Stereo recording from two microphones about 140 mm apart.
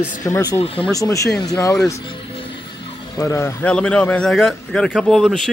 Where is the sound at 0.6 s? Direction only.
45° left (ahead or behind).